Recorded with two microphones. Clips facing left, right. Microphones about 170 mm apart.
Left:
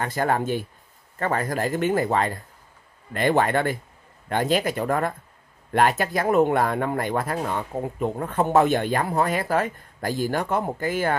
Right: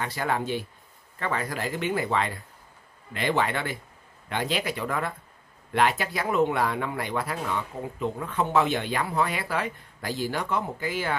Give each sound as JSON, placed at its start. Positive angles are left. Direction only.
{"t": 0.0, "sound": "speech", "side_deg": 45}